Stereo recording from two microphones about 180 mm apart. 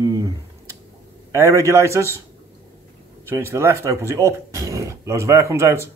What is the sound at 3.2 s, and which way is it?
Speech, 15° right (ahead or behind).